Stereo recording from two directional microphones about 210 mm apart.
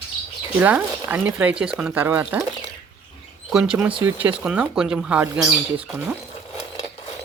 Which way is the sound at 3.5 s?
5° right (ahead or behind).